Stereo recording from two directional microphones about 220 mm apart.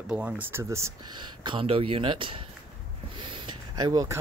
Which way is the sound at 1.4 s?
25° right (ahead or behind).